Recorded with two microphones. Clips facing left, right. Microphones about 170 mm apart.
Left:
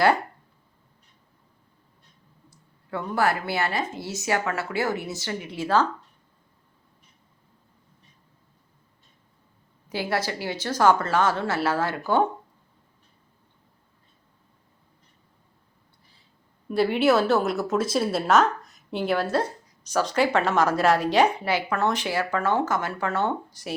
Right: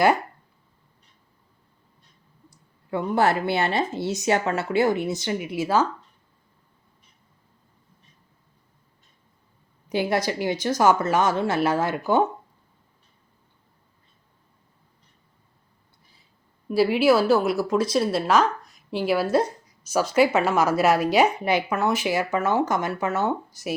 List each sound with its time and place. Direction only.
2.9 s speech: 15° right (ahead or behind)
9.9 s speech: 15° right (ahead or behind)
16.6 s speech: 5° right (ahead or behind)